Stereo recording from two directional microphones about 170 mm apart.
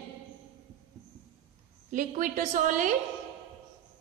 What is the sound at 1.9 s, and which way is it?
A woman's voice, 50° right (ahead or behind).